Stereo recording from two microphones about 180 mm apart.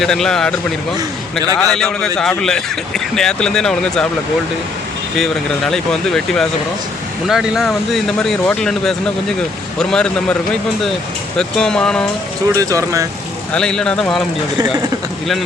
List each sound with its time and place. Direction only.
0.0 s a man's voice: 5° left (ahead or behind)
0.9 s a man's voice: 20° right (ahead or behind)
1.5 s a man's voice: 5° left (ahead or behind)
5.1 s a man's voice: centre (ahead or behind)
11.3 s a man's voice: 5° left (ahead or behind)
12.5 s speech: 20° right (ahead or behind)
13.5 s a man's voice: 5° left (ahead or behind)